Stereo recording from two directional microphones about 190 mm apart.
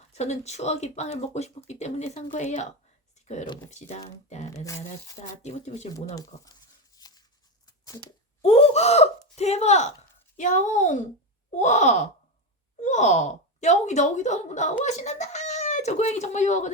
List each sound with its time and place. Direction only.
0.1 s speech: 35° left (ahead or behind)
5.4 s speech: 35° left (ahead or behind)
6.1 s a sound: 20° left (ahead or behind)
8.4 s speech: 35° left (ahead or behind)